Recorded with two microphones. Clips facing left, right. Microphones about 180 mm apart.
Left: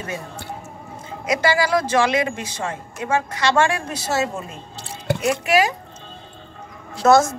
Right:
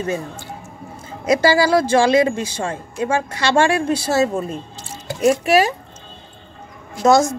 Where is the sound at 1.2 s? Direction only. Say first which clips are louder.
Right 5 dB; 35° right (ahead or behind).